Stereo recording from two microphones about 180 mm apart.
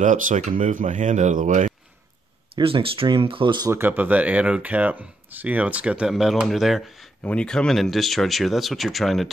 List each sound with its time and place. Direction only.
0.0 s speech: 45° right (ahead or behind)
2.5 s speech: 30° right (ahead or behind)
3.7 s speech: 10° right (ahead or behind)